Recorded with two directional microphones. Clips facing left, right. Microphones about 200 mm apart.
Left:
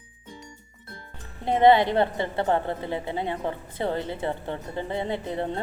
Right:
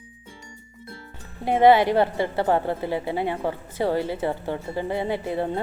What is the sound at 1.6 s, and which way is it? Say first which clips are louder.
A woman's voice: right 2 dB; 25° left (ahead or behind).